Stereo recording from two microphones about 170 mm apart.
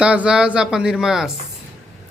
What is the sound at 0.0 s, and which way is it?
Speech, 5° right (ahead or behind).